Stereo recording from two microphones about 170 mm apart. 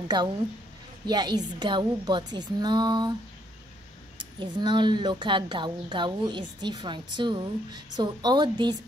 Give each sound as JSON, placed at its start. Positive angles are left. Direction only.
{"t": 0.1, "sound": "a woman's voice", "side_deg": -25}
{"t": 4.2, "sound": "a woman's voice", "side_deg": -25}